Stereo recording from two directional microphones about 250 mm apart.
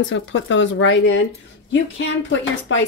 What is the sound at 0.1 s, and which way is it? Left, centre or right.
Speech, left.